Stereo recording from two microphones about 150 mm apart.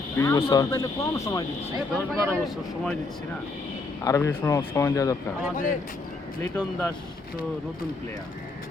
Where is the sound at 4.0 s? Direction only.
20° left (ahead or behind).